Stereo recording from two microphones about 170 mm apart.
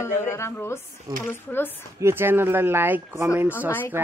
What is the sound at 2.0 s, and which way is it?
Speech, 15° right (ahead or behind).